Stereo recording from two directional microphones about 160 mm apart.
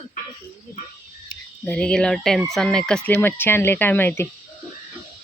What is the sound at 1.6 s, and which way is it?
Speech, 5° left (ahead or behind).